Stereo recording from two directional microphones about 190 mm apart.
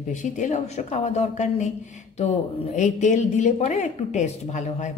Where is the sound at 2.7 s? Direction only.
40° left (ahead or behind).